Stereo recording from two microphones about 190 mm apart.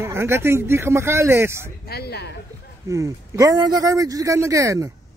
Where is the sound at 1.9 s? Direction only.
55° left (ahead or behind).